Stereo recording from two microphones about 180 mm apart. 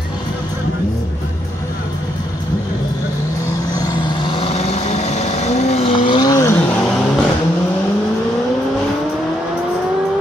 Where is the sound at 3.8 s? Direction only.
25° left (ahead or behind).